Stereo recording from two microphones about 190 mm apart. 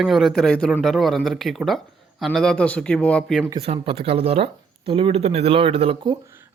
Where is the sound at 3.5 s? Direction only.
30° right (ahead or behind).